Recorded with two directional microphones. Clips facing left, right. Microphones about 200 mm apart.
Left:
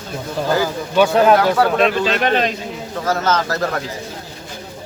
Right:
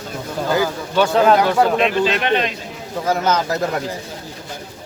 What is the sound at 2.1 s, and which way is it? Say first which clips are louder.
Speech: left 2 dB; 40° left (ahead or behind).